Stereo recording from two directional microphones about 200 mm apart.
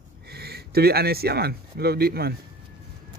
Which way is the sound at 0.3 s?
55° right (ahead or behind).